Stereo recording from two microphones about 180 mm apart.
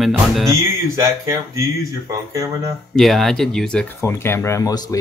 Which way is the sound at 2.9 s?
Centre (ahead or behind).